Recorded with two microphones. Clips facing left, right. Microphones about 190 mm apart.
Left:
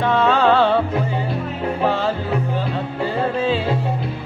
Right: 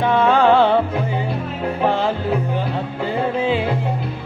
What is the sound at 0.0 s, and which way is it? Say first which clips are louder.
Music: right 1 dB; 15° right (ahead or behind).